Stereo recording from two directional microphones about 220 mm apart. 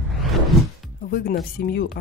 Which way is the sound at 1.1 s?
40° left (ahead or behind).